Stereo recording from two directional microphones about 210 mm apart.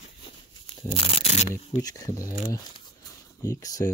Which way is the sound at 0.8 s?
25° left (ahead or behind).